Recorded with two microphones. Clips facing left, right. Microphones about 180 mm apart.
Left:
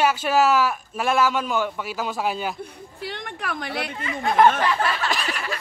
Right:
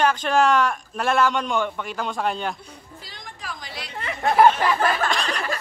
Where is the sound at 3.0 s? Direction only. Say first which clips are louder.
Left 11 dB; 65° left (ahead or behind).